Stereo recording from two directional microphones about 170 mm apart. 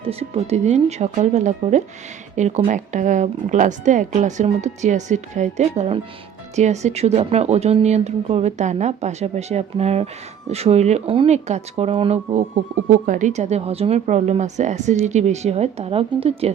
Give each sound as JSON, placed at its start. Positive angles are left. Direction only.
{"t": 0.0, "sound": "speech", "side_deg": -35}